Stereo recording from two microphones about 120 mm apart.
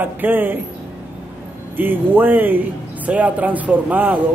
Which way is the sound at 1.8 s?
15° right (ahead or behind).